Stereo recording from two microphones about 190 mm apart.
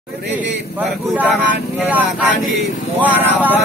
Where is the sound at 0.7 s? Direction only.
10° right (ahead or behind).